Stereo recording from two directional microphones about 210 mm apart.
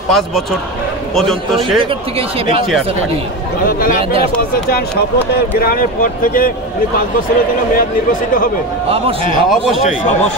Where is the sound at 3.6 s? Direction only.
45° left (ahead or behind).